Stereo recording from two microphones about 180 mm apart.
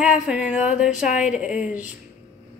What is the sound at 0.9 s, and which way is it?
Speech, 45° left (ahead or behind).